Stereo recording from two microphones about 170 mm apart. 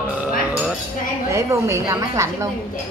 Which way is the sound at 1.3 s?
15° right (ahead or behind).